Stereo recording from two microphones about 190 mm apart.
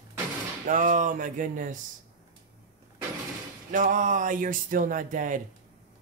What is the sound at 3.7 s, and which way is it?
Speech, 45° right (ahead or behind).